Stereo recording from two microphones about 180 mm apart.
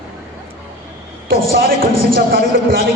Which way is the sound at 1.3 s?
55° right (ahead or behind).